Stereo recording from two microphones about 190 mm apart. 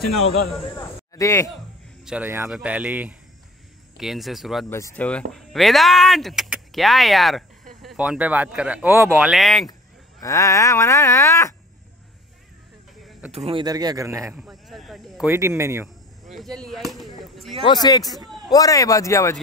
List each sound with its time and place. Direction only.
0.7 s a sound: 15° left (ahead or behind)
2.0 s speech: 10° right (ahead or behind)
4.6 s speech: 15° left (ahead or behind); by 9.2 s 10° right (ahead or behind)
9.2 s speech: centre (ahead or behind)
10.2 s groan: 15° left (ahead or behind)
13.3 s speech: 30° right (ahead or behind); by 15.2 s centre (ahead or behind)
15.2 s speech: 15° right (ahead or behind)
16.3 s speech: centre (ahead or behind)
17.2 s a sound: centre (ahead or behind)
17.8 s a man's voice: 20° left (ahead or behind)
18.5 s groan: 20° left (ahead or behind)